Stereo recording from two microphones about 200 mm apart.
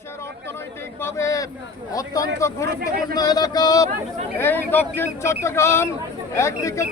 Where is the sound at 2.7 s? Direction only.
50° right (ahead or behind).